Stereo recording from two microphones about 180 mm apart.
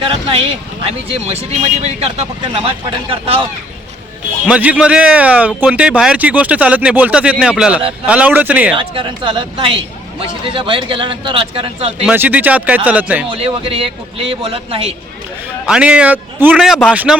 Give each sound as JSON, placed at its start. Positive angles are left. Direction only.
{"t": 0.0, "sound": "a man's voice", "side_deg": -30}
{"t": 4.4, "sound": "a man's voice", "side_deg": -5}
{"t": 8.7, "sound": "speech", "side_deg": -30}
{"t": 12.0, "sound": "a man's voice", "side_deg": -10}
{"t": 13.3, "sound": "a man's voice", "side_deg": -30}
{"t": 15.6, "sound": "a man's voice", "side_deg": -5}